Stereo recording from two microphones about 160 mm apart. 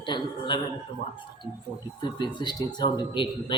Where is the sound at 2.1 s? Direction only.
30° left (ahead or behind).